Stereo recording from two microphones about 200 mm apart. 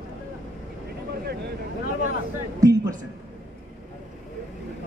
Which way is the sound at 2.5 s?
15° right (ahead or behind).